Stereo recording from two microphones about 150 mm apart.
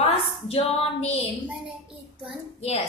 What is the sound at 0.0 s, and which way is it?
A woman's voice, 40° left (ahead or behind).